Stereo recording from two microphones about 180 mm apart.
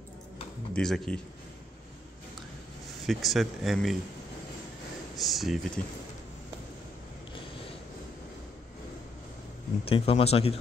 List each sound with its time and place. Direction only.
0.7 s speech: 5° left (ahead or behind)
3.1 s speech: centre (ahead or behind)
5.1 s speech: centre (ahead or behind)
9.8 s speech: 30° left (ahead or behind)